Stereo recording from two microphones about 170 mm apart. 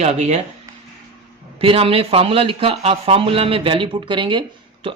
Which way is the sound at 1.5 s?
35° right (ahead or behind).